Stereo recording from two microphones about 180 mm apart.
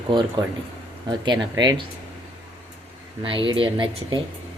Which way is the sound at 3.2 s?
25° right (ahead or behind).